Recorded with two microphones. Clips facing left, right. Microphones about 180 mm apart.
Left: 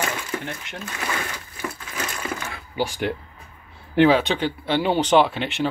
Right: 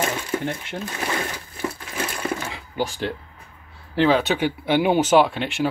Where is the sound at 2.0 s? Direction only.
30° right (ahead or behind).